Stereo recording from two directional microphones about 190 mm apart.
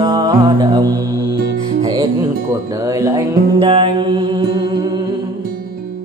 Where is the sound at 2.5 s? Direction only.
15° right (ahead or behind).